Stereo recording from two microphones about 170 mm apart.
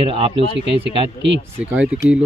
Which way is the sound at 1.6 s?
10° right (ahead or behind).